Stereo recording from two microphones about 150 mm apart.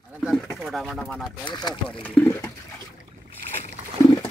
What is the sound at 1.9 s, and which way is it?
Speech, 10° left (ahead or behind).